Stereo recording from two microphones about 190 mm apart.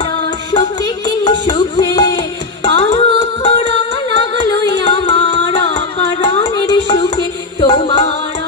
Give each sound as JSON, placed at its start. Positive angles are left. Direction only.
{"t": 0.5, "sound": "music", "side_deg": 25}
{"t": 2.8, "sound": "music", "side_deg": 35}